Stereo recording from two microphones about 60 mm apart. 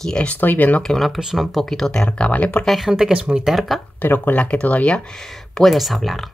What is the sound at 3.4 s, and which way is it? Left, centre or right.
Speech, centre.